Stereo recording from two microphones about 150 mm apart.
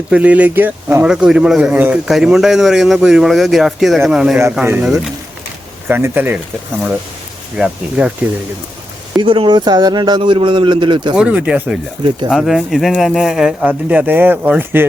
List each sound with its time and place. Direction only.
0.1 s speech: 10° right (ahead or behind)
7.5 s speech: 5° right (ahead or behind)
9.1 s a man's voice: 35° right (ahead or behind)
11.2 s speech: 10° right (ahead or behind)